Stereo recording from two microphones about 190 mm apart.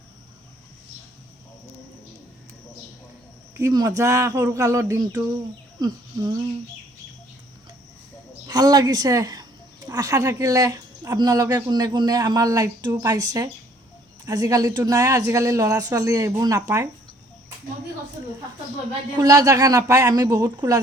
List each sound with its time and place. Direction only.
3.6 s a woman's voice: 20° right (ahead or behind)
8.4 s a woman's voice: 20° right (ahead or behind)
19.1 s a woman's voice: 20° right (ahead or behind)